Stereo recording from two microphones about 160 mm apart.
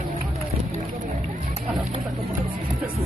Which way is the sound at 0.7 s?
45° right (ahead or behind).